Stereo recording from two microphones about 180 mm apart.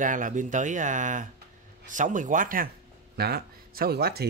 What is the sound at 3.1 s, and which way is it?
Speech, 60° right (ahead or behind).